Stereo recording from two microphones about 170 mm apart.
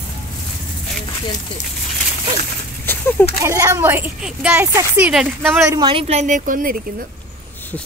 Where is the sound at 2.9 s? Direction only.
10° left (ahead or behind).